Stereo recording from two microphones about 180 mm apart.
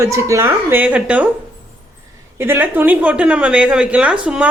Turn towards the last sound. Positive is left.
turn(degrees=-5)  # may be behind; listen again after turning